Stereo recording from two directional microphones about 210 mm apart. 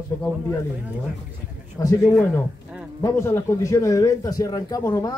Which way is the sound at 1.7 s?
15° left (ahead or behind).